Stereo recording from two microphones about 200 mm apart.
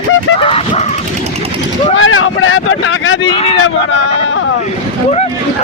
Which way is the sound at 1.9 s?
85° left.